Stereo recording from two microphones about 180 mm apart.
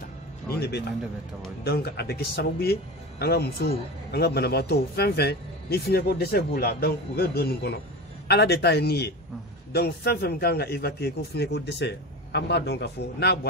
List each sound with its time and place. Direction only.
0.5 s a man's voice: 65° left (ahead or behind)